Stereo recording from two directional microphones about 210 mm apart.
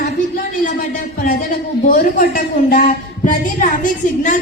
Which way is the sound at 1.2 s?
40° left (ahead or behind).